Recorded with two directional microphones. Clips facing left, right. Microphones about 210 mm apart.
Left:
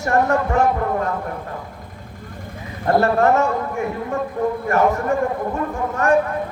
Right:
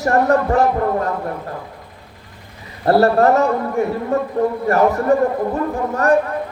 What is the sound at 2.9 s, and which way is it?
Speech, 35° right (ahead or behind).